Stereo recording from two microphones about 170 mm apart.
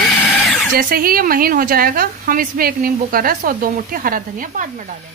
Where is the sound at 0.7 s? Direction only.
60° right (ahead or behind).